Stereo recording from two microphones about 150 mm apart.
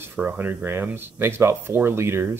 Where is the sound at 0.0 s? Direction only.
15° right (ahead or behind).